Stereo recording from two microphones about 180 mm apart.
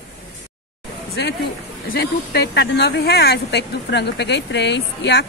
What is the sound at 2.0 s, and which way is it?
Speech, 70° left (ahead or behind).